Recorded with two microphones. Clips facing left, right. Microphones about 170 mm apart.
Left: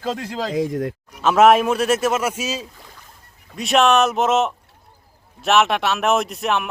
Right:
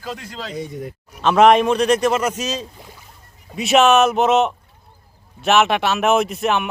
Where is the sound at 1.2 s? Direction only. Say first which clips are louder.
Right 1 dB; 5° left (ahead or behind).